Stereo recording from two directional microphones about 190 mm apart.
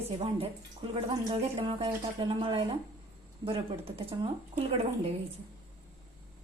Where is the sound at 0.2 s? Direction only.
30° right (ahead or behind).